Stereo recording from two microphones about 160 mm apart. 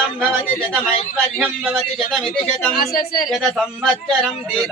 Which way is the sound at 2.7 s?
70° left (ahead or behind).